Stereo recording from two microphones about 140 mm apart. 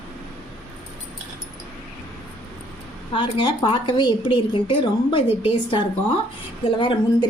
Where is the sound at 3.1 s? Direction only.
35° left (ahead or behind).